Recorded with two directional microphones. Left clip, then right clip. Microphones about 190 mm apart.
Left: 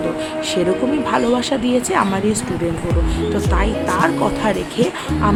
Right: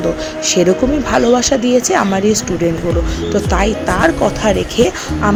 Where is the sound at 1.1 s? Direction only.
20° right (ahead or behind).